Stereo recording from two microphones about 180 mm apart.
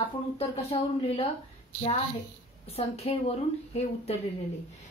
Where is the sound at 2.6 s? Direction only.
35° left (ahead or behind).